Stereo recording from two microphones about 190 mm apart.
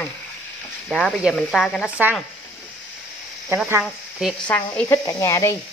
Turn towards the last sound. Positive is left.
turn(degrees=15)  # may be behind; listen again after turning